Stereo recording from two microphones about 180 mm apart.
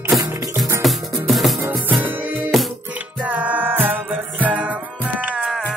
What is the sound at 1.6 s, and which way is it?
Music, 10° right (ahead or behind).